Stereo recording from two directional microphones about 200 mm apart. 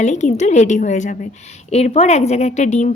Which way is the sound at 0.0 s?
35° left (ahead or behind).